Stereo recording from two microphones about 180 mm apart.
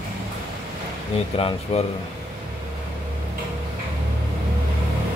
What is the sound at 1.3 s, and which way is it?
Speech, 30° left (ahead or behind).